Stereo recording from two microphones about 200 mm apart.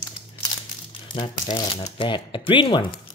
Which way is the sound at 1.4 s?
25° left (ahead or behind).